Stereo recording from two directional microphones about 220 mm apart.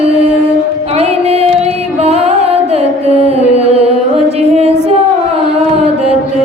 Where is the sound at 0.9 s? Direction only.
30° right (ahead or behind).